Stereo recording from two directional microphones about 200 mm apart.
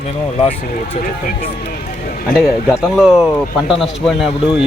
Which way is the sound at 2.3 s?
Centre (ahead or behind).